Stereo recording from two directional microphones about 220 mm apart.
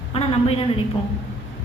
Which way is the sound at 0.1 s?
25° left (ahead or behind).